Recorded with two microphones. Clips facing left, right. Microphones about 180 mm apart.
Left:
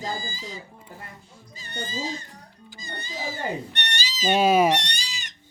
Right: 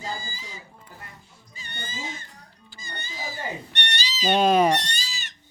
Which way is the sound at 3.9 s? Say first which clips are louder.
Right 2 dB; 45° left (ahead or behind).